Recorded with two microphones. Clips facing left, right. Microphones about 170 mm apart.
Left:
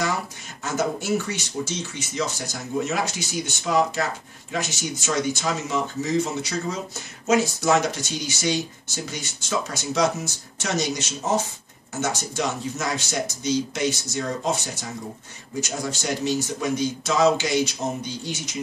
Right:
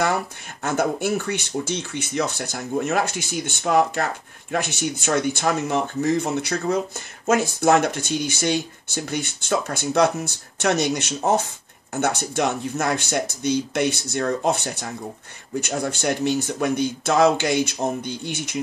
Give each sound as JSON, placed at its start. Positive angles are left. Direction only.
{"t": 0.7, "sound": "speech", "side_deg": -60}